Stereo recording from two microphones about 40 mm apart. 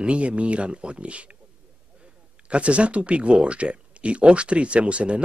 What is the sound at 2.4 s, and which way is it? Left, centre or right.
Speech, right.